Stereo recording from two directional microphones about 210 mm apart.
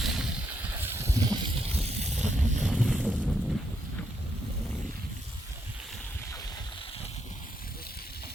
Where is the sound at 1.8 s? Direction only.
30° right (ahead or behind).